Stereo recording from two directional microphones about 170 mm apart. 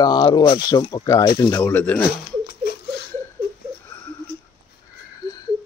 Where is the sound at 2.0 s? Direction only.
65° left (ahead or behind).